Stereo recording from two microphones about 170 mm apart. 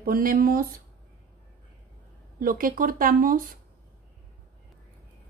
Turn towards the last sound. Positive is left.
turn(degrees=-55)  # may be behind; listen again after turning